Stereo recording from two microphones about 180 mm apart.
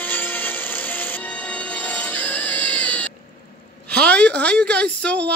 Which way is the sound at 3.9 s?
5° left (ahead or behind).